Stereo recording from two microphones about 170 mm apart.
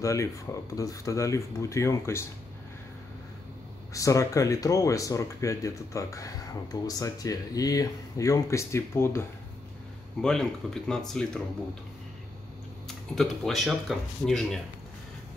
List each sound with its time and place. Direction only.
0.0 s speech: 20° left (ahead or behind)
3.9 s speech: 20° left (ahead or behind)
10.2 s speech: 5° left (ahead or behind)
12.8 s speech: centre (ahead or behind)